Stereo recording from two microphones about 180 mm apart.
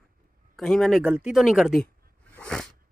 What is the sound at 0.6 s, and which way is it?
Speech, centre (ahead or behind).